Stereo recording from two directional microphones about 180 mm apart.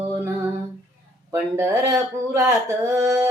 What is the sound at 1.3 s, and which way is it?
Speech, 15° right (ahead or behind).